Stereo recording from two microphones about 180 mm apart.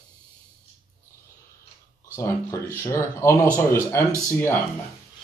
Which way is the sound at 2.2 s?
15° left (ahead or behind).